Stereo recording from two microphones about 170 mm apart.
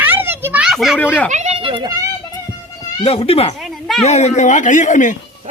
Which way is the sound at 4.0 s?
40° left (ahead or behind).